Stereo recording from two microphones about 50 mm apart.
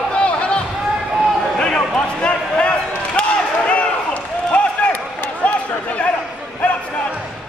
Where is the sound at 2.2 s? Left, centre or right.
Left.